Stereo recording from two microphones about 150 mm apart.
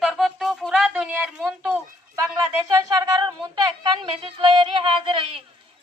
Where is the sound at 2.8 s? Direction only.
25° right (ahead or behind).